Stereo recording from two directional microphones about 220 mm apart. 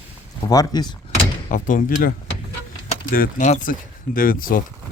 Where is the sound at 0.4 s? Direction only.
15° left (ahead or behind).